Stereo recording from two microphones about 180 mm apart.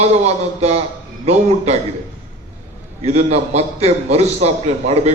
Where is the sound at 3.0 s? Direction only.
35° right (ahead or behind).